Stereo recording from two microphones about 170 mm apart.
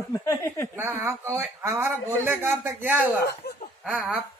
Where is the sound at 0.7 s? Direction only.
15° right (ahead or behind).